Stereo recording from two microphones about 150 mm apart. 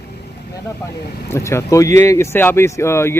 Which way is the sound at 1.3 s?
20° left (ahead or behind).